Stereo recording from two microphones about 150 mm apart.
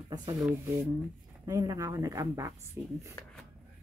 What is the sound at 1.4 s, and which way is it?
A woman's voice, 25° right (ahead or behind).